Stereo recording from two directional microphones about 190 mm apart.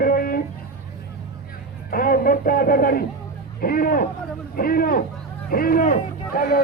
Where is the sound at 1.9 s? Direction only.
50° left (ahead or behind).